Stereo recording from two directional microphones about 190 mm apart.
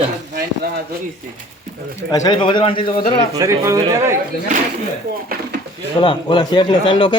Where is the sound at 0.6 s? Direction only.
55° right (ahead or behind).